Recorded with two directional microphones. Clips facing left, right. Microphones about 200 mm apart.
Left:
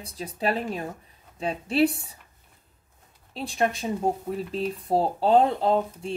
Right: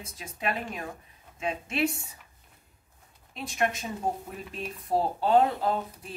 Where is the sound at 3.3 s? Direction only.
30° left (ahead or behind).